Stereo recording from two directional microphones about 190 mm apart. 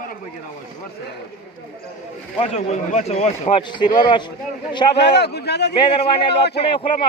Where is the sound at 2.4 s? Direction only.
35° left (ahead or behind).